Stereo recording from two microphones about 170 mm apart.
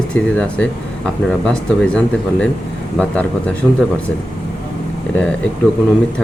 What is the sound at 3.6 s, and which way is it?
Speech, 10° right (ahead or behind).